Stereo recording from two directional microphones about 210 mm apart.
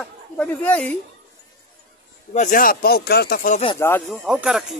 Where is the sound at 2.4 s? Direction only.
40° left (ahead or behind).